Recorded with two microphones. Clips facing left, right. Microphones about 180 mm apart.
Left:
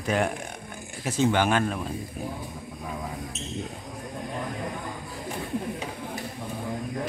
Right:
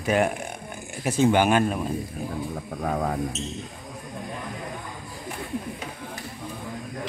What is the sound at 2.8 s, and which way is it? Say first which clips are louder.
Speech: right 9 dB; 65° right (ahead or behind).